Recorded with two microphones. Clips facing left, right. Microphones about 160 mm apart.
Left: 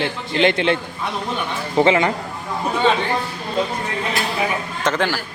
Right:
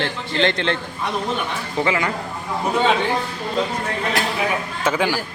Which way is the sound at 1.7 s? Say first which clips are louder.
Left 6 dB; 25° left (ahead or behind).